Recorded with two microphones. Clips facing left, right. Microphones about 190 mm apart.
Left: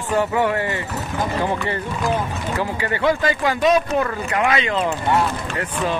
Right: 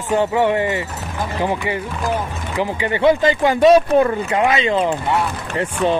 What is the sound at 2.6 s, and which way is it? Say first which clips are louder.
Speech: right 6 dB; 20° right (ahead or behind).